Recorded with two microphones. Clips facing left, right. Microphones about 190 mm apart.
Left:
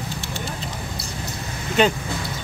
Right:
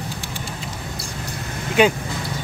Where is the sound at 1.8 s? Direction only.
10° right (ahead or behind).